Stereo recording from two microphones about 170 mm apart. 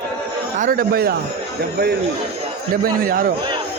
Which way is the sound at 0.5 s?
55° right (ahead or behind).